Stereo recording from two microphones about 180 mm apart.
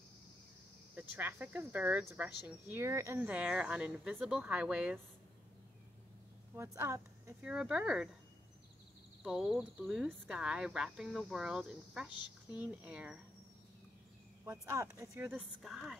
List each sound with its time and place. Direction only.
0.9 s speech: 10° right (ahead or behind)
6.5 s speech: 15° right (ahead or behind)
9.2 s speech: 5° right (ahead or behind)
14.4 s speech: 15° right (ahead or behind)
15.6 s speech: centre (ahead or behind)